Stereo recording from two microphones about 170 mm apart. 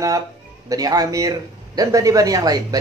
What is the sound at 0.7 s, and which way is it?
Speech, 20° right (ahead or behind).